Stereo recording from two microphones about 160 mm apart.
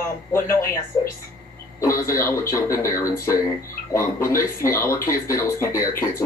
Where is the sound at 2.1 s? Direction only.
15° left (ahead or behind).